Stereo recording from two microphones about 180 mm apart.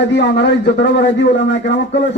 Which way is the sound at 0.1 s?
80° left.